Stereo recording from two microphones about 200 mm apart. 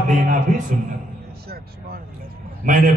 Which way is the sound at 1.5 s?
50° right (ahead or behind).